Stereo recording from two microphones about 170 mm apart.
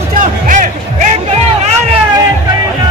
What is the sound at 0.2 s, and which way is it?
Music, 50° right (ahead or behind).